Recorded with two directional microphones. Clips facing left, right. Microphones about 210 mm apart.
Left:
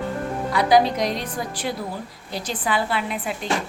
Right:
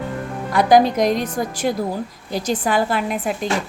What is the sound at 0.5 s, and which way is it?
A woman's voice, 45° right (ahead or behind).